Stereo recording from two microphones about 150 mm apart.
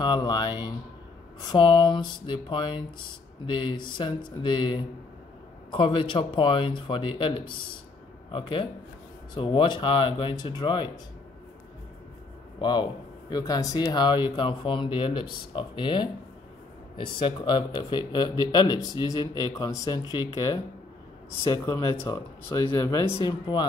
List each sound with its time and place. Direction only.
0.0 s a man's voice: 30° left (ahead or behind)
12.5 s a man's voice: 30° left (ahead or behind)